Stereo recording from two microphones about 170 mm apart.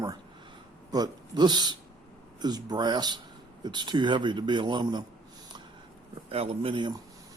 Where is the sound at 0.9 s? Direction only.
25° right (ahead or behind).